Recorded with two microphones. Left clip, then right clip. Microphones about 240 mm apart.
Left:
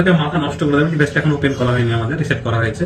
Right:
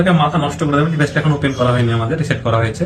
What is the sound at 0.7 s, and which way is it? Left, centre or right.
A man's voice, right.